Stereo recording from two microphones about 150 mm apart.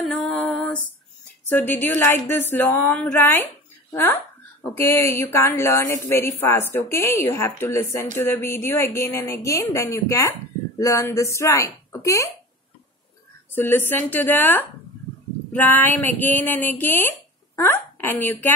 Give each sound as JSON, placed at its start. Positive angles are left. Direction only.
{"t": 0.0, "sound": "female singing", "side_deg": 5}
{"t": 1.5, "sound": "a woman's voice", "side_deg": 10}
{"t": 13.6, "sound": "a woman's voice", "side_deg": 15}